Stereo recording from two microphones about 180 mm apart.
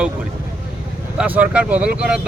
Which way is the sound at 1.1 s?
10° right (ahead or behind).